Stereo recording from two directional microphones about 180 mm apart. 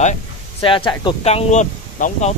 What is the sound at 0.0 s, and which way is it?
Speech, 35° left (ahead or behind).